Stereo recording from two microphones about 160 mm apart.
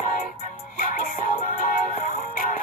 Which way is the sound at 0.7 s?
60° left (ahead or behind).